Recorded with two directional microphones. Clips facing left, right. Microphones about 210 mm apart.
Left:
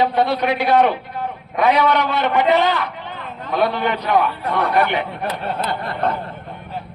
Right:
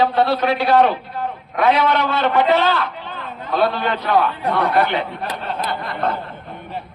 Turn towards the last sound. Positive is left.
turn(degrees=20)  # may be behind; listen again after turning